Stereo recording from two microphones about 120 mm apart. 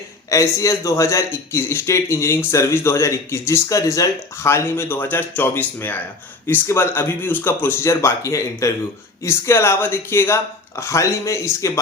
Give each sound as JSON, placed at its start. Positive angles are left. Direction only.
{"t": 0.3, "sound": "speech", "side_deg": 25}